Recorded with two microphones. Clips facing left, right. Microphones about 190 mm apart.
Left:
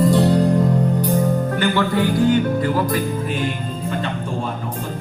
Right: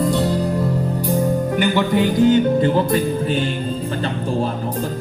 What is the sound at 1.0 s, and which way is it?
Music, 10° right (ahead or behind).